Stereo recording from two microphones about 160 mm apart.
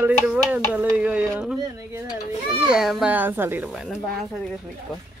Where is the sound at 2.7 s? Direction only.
Centre (ahead or behind).